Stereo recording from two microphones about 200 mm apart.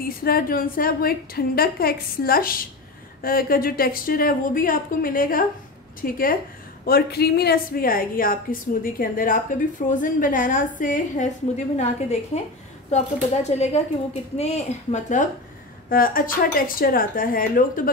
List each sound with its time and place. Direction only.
0.0 s a woman's voice: 45° left (ahead or behind)